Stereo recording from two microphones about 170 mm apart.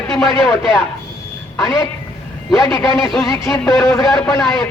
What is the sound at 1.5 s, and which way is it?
Speech, 5° right (ahead or behind).